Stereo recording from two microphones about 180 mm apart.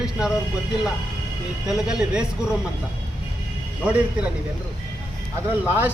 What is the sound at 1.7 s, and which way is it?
Speech, 5° right (ahead or behind).